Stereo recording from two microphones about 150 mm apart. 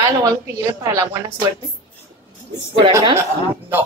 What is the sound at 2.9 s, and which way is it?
Speech, 20° right (ahead or behind).